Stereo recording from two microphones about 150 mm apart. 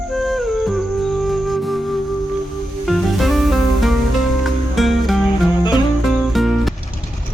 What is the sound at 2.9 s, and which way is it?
Music, centre (ahead or behind).